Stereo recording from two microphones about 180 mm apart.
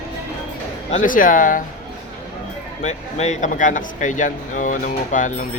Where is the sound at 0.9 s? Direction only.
45° left (ahead or behind).